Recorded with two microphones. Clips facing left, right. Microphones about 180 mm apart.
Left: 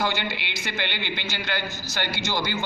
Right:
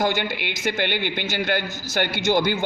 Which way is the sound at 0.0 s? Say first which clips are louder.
Right 4 dB; 50° right (ahead or behind).